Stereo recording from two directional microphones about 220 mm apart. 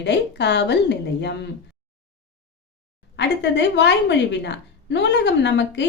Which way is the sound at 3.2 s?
50° left (ahead or behind).